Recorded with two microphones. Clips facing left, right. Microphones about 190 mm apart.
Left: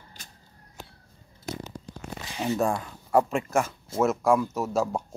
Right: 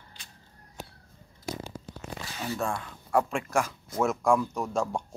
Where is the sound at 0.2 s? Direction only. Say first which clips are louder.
Left 3 dB; 45° left (ahead or behind).